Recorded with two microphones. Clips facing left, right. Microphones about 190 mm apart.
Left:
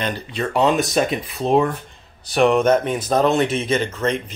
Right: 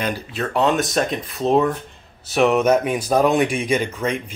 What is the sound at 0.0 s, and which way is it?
A man's voice, 5° right (ahead or behind).